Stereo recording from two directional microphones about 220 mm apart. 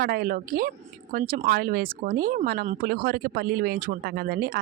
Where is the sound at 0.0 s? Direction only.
40° right (ahead or behind).